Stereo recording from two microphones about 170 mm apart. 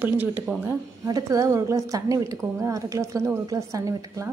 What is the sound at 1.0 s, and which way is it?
A woman's voice, 20° right (ahead or behind).